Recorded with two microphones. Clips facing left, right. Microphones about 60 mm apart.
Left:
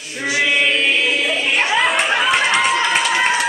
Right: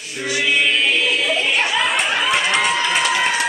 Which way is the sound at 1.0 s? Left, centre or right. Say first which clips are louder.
Even; centre.